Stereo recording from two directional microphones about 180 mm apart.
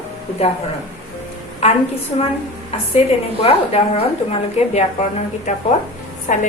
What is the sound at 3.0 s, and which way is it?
Speech, 35° left (ahead or behind).